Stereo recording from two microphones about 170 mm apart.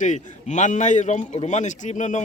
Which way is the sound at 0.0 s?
45° left (ahead or behind).